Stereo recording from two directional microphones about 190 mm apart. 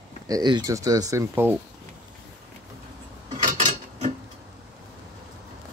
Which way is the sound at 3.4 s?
40° right (ahead or behind).